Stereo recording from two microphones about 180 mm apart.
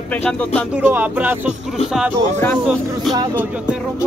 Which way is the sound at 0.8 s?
10° right (ahead or behind).